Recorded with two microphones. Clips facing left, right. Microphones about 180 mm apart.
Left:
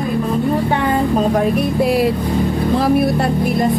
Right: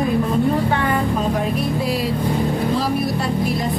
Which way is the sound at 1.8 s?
60° left (ahead or behind).